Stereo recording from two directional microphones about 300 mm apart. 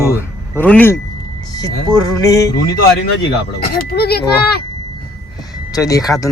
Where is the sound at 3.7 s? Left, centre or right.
Left.